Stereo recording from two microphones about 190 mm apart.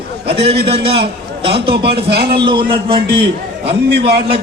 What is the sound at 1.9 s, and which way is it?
Speech, 55° right (ahead or behind).